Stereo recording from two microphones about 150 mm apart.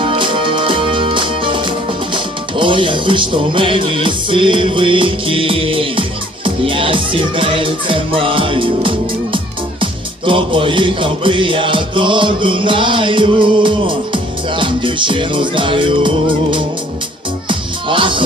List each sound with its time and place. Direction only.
0.0 s music: 35° right (ahead or behind)